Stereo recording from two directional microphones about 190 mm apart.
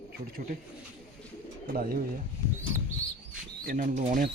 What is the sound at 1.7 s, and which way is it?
Speech, 50° right (ahead or behind).